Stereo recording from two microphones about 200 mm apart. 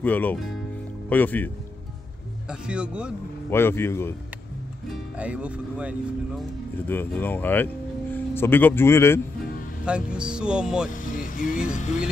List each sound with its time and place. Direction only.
0.0 s a man's voice: 10° left (ahead or behind)
2.6 s speech: 5° right (ahead or behind)
3.4 s a man's voice: 10° left (ahead or behind)
4.8 s speech: 5° right (ahead or behind)
6.9 s speech: 10° left (ahead or behind)
9.8 s speech: 5° right (ahead or behind)
11.0 s vehicle: 40° left (ahead or behind)
11.7 s music: 35° left (ahead or behind)